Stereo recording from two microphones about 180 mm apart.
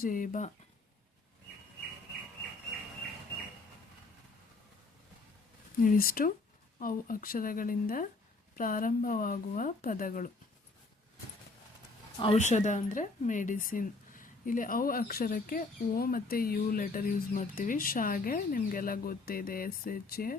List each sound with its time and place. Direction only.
0.0 s speech: 50° left (ahead or behind)
5.8 s speech: 50° left (ahead or behind)
12.2 s speech: 35° left (ahead or behind); by 20.3 s 55° left (ahead or behind)